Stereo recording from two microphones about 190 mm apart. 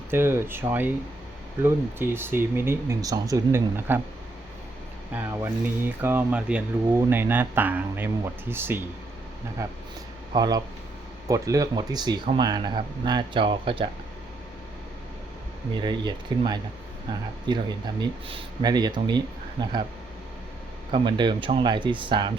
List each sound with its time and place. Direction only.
0.1 s speech: 10° right (ahead or behind)
5.1 s speech: 10° right (ahead or behind); by 13.9 s 25° right (ahead or behind)
15.7 s speech: 25° right (ahead or behind)
20.9 s speech: 25° right (ahead or behind)